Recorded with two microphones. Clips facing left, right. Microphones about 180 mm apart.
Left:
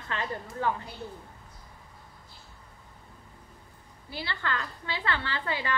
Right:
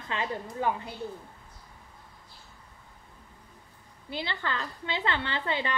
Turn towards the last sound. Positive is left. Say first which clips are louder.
# right 1 dB
turn(degrees=-25)  # may be behind; listen again after turning